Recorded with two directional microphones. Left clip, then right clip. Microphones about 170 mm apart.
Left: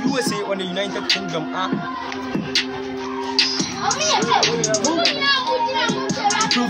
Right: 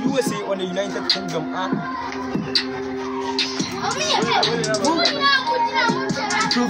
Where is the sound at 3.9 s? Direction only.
25° right (ahead or behind).